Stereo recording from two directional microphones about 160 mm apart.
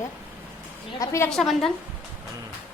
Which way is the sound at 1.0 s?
20° left (ahead or behind).